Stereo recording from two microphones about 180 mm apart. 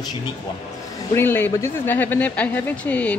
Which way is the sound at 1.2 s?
10° left (ahead or behind).